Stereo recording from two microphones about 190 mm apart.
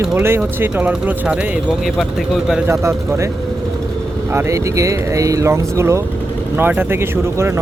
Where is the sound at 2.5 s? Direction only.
5° right (ahead or behind).